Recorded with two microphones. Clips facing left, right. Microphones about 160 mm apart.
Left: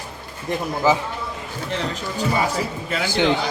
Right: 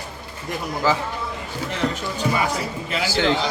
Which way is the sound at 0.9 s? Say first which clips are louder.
Left 3 dB; 15° left (ahead or behind).